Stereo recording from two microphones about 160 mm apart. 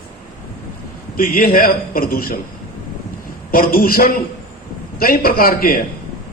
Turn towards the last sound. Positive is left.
turn(degrees=65)  # may be behind; listen again after turning